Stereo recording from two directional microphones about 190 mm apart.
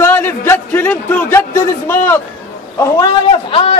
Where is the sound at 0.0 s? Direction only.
10° left (ahead or behind).